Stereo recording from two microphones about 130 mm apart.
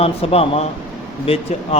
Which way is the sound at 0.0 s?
50° left (ahead or behind).